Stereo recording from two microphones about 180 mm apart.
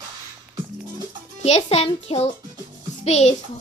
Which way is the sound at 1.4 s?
35° left (ahead or behind).